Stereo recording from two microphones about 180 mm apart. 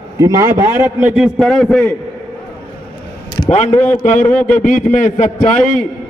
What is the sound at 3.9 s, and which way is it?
A man's voice, 45° left (ahead or behind).